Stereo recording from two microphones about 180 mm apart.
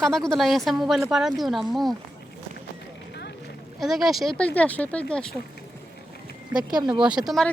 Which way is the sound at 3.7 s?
Centre (ahead or behind).